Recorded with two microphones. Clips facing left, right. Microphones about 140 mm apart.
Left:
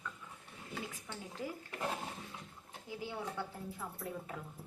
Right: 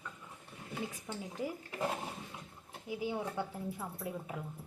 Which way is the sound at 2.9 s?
15° right (ahead or behind).